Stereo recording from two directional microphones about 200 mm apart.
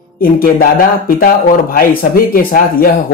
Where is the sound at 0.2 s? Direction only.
45° left (ahead or behind).